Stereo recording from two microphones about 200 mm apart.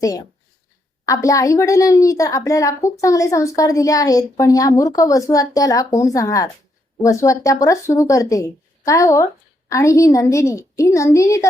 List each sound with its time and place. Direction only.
1.0 s a woman's voice: 15° left (ahead or behind)